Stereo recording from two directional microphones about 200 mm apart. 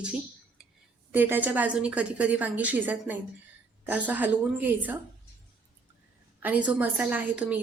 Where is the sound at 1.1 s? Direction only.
10° right (ahead or behind).